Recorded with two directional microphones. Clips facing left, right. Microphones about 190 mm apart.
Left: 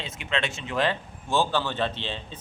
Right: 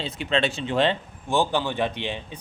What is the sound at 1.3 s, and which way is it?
A man's voice, 15° right (ahead or behind).